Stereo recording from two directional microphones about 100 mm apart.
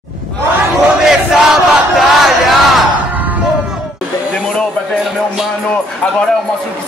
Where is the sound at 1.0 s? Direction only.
Centre (ahead or behind).